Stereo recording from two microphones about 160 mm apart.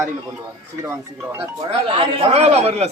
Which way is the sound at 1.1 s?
15° right (ahead or behind).